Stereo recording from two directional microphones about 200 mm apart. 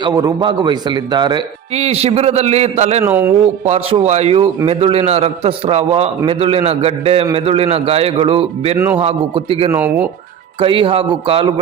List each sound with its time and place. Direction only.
0.1 s a man's voice: 15° right (ahead or behind); by 3.0 s 35° right (ahead or behind)
3.0 s a man's voice: 10° right (ahead or behind)
3.7 s a man's voice: 30° right (ahead or behind)
9.7 s a man's voice: 10° right (ahead or behind)
10.6 s a man's voice: 25° right (ahead or behind)